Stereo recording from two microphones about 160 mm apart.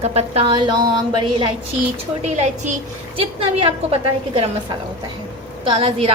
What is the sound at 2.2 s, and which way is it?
A woman's voice, 45° right (ahead or behind).